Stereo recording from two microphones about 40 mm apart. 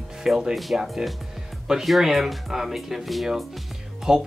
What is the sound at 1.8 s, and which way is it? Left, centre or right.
Speech, centre.